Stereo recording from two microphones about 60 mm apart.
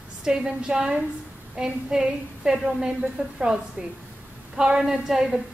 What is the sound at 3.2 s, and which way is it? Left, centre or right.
A woman's voice, right.